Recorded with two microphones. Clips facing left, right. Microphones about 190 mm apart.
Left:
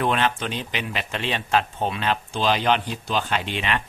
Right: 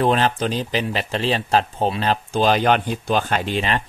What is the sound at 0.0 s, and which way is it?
Speech, 35° right (ahead or behind).